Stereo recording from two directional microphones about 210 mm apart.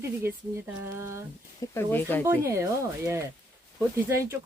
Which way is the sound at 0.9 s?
15° right (ahead or behind).